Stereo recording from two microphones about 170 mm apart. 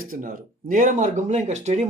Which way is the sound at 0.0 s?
55° right (ahead or behind).